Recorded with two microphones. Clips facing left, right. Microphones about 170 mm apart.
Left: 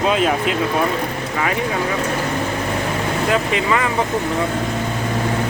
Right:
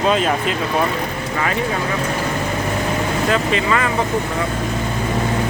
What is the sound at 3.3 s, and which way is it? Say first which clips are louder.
Speech: even; 15° left (ahead or behind).